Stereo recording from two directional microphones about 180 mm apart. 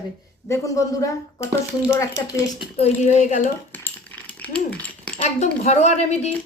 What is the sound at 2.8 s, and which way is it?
Speech, 40° left (ahead or behind).